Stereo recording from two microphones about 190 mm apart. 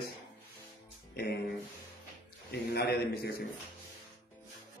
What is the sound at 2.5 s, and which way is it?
Mantra, 60° left (ahead or behind).